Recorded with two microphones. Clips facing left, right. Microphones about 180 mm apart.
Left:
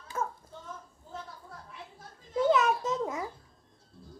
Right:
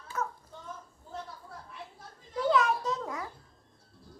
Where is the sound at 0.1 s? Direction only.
30° left (ahead or behind).